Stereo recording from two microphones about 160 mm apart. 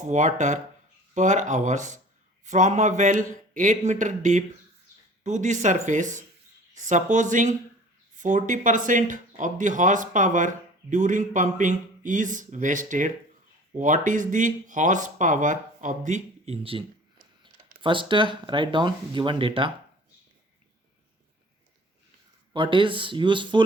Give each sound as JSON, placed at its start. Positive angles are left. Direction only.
{"t": 0.1, "sound": "speech", "side_deg": -50}
{"t": 22.5, "sound": "speech", "side_deg": -30}